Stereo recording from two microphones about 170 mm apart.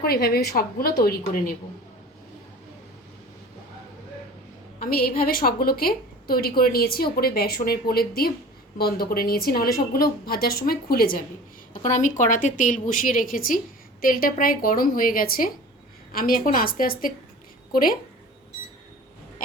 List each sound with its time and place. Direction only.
0.0 s a woman's voice: 65° left (ahead or behind)
4.8 s a woman's voice: 60° left (ahead or behind)
11.7 s a woman's voice: 45° left (ahead or behind)